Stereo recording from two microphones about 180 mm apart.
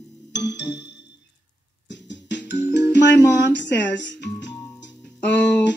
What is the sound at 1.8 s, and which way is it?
Music, 80° left.